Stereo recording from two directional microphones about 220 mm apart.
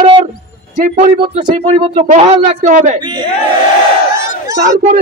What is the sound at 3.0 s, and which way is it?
Speech, 20° right (ahead or behind).